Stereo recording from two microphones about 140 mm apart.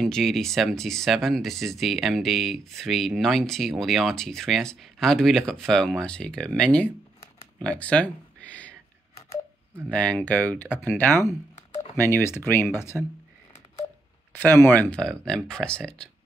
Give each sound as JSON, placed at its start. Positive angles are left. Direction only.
{"t": 0.0, "sound": "speech", "side_deg": 5}
{"t": 9.8, "sound": "speech", "side_deg": 10}
{"t": 14.3, "sound": "speech", "side_deg": 15}